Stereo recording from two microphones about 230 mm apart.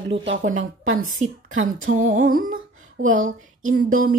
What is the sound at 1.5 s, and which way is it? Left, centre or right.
Speech, right.